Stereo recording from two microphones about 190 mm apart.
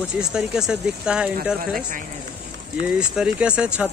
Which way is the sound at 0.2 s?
5° right (ahead or behind).